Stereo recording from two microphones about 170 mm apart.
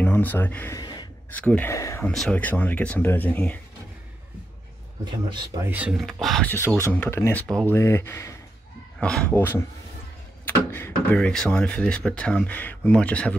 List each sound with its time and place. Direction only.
0.0 s speech: 10° left (ahead or behind)
0.7 s gasp: 25° left (ahead or behind)
1.3 s speech: 10° left (ahead or behind)
2.0 s speech: 5° left (ahead or behind)
5.0 s speech: 25° right (ahead or behind)
5.7 s speech: 5° right (ahead or behind); by 7.4 s 15° left (ahead or behind)
7.4 s speech: 5° left (ahead or behind)
7.7 s speech: 15° left (ahead or behind)